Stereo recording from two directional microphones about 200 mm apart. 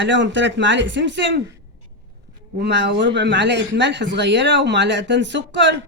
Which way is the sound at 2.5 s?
60° right (ahead or behind).